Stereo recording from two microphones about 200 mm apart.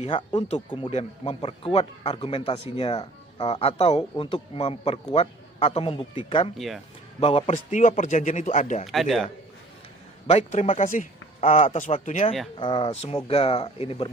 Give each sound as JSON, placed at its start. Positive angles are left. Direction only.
{"t": 0.0, "sound": "speech", "side_deg": 30}
{"t": 6.5, "sound": "a man's voice", "side_deg": 0}
{"t": 7.2, "sound": "speech", "side_deg": 30}
{"t": 8.8, "sound": "a man's voice", "side_deg": 0}
{"t": 10.3, "sound": "speech", "side_deg": 35}
{"t": 12.5, "sound": "speech", "side_deg": 20}